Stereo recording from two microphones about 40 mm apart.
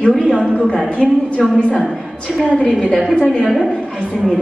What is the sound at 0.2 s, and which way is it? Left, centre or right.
A woman's voice, centre.